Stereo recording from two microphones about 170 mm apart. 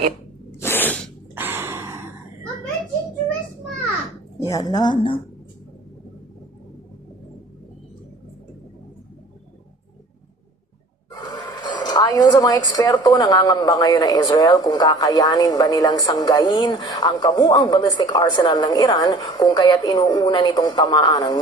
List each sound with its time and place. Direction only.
0.6 s sneeze: 10° left (ahead or behind)
1.4 s gasp: 15° right (ahead or behind)
4.4 s speech: 20° left (ahead or behind)
11.2 s speech: 25° left (ahead or behind)